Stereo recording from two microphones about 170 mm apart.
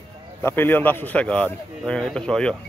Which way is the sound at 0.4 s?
15° left (ahead or behind).